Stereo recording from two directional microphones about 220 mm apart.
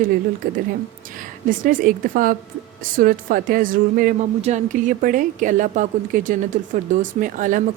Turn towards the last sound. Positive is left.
turn(degrees=-35)  # may be behind; listen again after turning